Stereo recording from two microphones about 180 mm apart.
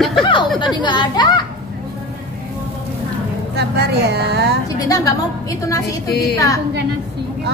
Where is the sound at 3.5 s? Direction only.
65° right (ahead or behind).